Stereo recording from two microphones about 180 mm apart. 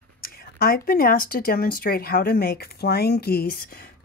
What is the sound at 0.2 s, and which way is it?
Speech, 55° left (ahead or behind).